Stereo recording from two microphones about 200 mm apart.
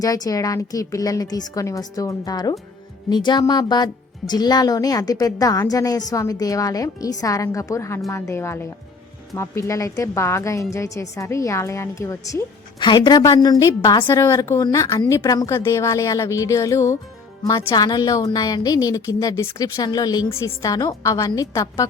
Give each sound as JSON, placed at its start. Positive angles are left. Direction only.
{"t": 0.0, "sound": "speech", "side_deg": 15}